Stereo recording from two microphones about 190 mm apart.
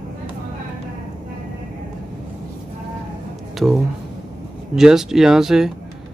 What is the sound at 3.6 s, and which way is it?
Speech, 5° right (ahead or behind).